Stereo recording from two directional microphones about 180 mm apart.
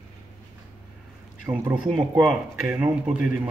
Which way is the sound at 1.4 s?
10° right (ahead or behind).